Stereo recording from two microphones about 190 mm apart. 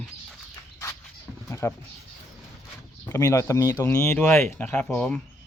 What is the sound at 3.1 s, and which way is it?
Speech, 15° left (ahead or behind).